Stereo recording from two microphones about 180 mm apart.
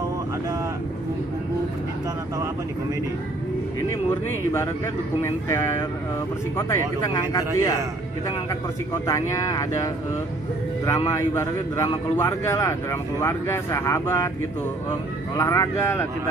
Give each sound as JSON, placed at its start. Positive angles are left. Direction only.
{"t": 4.1, "sound": "a man's voice", "side_deg": 15}
{"t": 10.9, "sound": "a man's voice", "side_deg": 15}
{"t": 15.3, "sound": "a man's voice", "side_deg": 15}